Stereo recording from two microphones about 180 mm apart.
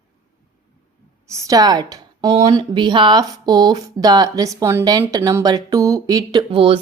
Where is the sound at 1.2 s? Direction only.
15° right (ahead or behind).